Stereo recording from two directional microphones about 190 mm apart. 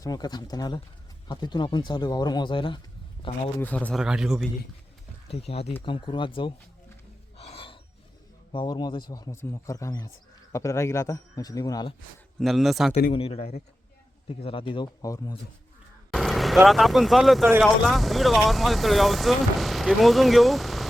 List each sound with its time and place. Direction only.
0.0 s speech: 20° left (ahead or behind)
3.6 s speech: 5° left (ahead or behind)
5.3 s speech: 30° left (ahead or behind)
7.3 s a sound: 30° left (ahead or behind)
8.5 s speech: 20° left (ahead or behind)
12.4 s speech: centre (ahead or behind)
13.1 s speech: 30° left (ahead or behind)
16.1 s speech: centre (ahead or behind)